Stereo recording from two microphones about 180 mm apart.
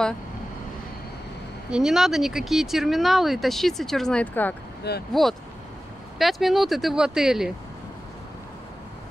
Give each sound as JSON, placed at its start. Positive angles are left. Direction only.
{"t": 1.7, "sound": "speech", "side_deg": -5}
{"t": 4.9, "sound": "speech", "side_deg": 65}
{"t": 6.1, "sound": "speech", "side_deg": 0}